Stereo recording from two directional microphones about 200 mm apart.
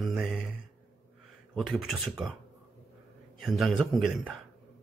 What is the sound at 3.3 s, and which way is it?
Speech, centre (ahead or behind).